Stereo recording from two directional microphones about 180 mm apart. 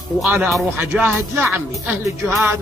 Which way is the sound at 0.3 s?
10° right (ahead or behind).